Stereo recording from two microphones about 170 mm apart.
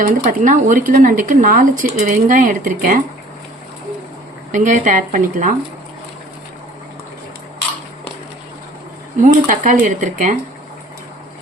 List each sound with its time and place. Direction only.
0.0 s speech: 50° right (ahead or behind)
4.5 s speech: 50° right (ahead or behind)
9.2 s speech: 50° right (ahead or behind)